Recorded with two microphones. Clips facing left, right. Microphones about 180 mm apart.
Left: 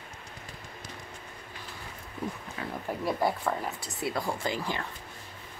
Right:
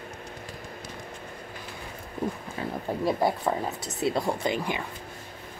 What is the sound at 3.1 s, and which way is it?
Speech, 20° right (ahead or behind).